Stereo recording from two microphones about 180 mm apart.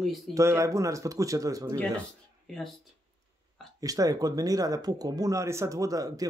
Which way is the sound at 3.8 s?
20° right (ahead or behind).